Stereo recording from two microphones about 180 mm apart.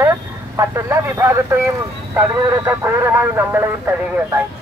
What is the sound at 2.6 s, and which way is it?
Speech, 15° right (ahead or behind).